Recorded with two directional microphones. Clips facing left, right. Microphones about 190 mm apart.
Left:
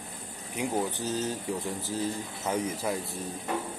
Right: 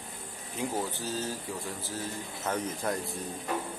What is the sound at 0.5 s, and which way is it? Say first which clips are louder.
Speech: left 3 dB; 20° left (ahead or behind).